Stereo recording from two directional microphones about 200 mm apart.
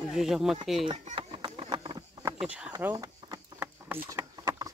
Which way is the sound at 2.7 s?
15° right (ahead or behind).